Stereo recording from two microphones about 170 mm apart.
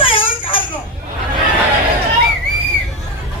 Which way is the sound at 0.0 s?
30° left (ahead or behind).